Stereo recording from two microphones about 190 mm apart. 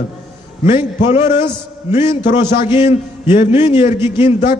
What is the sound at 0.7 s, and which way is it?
Speech, 35° left (ahead or behind).